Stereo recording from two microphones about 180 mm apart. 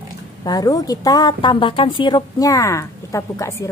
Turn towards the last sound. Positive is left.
turn(degrees=15)  # may be behind; listen again after turning